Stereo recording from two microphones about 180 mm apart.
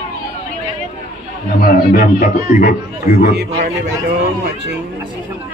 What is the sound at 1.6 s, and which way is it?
A man's voice, 55° left (ahead or behind).